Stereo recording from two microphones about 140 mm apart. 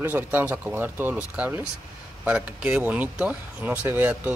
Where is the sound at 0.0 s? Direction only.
15° right (ahead or behind).